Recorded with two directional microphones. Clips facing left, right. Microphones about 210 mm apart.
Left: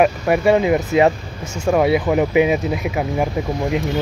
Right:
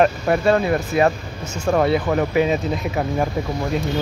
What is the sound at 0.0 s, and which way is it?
Speech, 15° left (ahead or behind).